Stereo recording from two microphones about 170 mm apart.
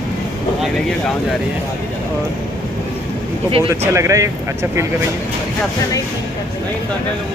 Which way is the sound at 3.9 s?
15° right (ahead or behind).